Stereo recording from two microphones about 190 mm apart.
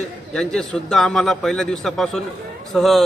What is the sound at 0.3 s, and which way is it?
A man's voice, 5° left (ahead or behind).